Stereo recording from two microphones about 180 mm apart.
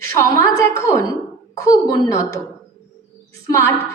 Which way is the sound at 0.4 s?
15° left (ahead or behind).